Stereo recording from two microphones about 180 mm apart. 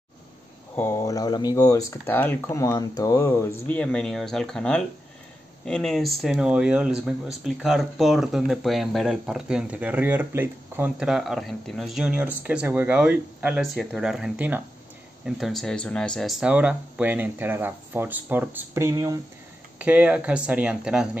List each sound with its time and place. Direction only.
0.7 s speech: 15° left (ahead or behind); by 21.2 s 5° right (ahead or behind)